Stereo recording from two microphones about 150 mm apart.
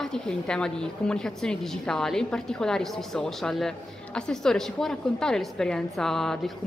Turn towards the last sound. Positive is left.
turn(degrees=0)  # may be behind; listen again after turning